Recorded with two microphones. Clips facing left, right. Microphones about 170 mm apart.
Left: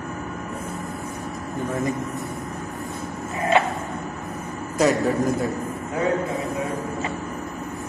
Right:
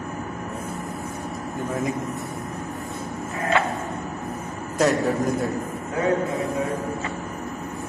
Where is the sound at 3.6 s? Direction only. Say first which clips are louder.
Left 3 dB; 20° left (ahead or behind).